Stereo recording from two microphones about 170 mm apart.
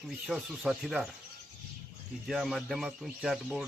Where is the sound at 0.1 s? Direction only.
Centre (ahead or behind).